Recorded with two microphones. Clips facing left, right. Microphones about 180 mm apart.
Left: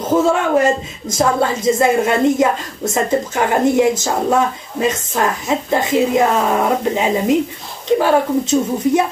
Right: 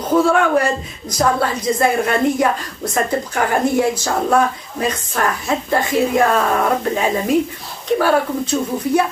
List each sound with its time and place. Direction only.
0.1 s a woman's voice: 20° left (ahead or behind)